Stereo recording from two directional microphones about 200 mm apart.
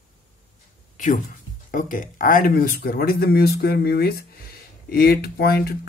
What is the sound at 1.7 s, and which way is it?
Speech, 40° left (ahead or behind).